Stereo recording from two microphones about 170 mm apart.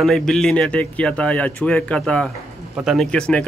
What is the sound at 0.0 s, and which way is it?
A man's voice, centre (ahead or behind).